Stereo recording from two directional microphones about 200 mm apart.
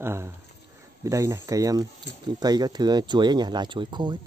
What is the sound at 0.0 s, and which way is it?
Speech, 15° right (ahead or behind).